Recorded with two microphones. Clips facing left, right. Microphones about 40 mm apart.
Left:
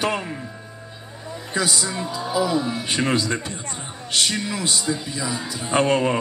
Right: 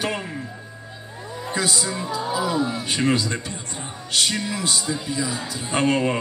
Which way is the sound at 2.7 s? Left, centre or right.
Left.